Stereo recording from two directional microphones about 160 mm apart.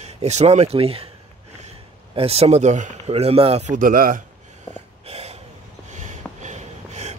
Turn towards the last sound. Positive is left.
turn(degrees=-45)  # may be behind; listen again after turning